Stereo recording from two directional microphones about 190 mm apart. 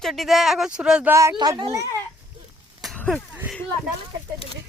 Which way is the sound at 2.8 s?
Centre (ahead or behind).